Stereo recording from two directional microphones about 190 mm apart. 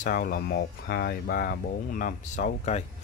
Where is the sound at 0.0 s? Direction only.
45° left (ahead or behind).